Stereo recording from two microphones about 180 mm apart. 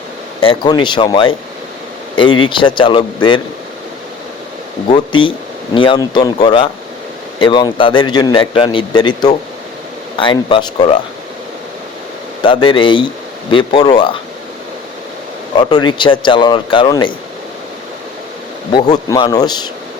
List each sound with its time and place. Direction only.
0.3 s a man's voice: 30° left (ahead or behind)
4.9 s a man's voice: 30° left (ahead or behind)
12.4 s a man's voice: 30° left (ahead or behind)
15.5 s a man's voice: 25° left (ahead or behind)
18.7 s a man's voice: 25° left (ahead or behind)